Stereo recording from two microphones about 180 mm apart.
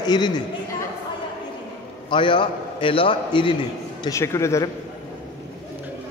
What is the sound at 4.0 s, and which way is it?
Speech, 15° left (ahead or behind).